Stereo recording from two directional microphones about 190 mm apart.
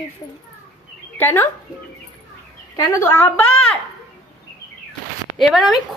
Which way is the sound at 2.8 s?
15° left (ahead or behind).